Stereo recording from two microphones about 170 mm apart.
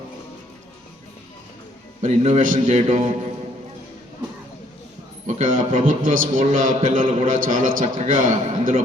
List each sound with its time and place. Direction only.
2.0 s a man's voice: 40° right (ahead or behind)
5.2 s a man's voice: 45° right (ahead or behind)